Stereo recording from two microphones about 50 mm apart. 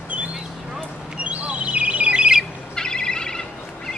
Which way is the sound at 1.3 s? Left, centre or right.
Right.